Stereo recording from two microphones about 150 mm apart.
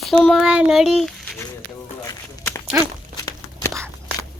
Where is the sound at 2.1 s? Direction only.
20° left (ahead or behind).